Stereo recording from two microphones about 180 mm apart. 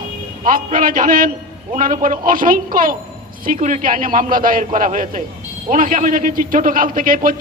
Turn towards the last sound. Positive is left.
turn(degrees=-50)  # may be behind; listen again after turning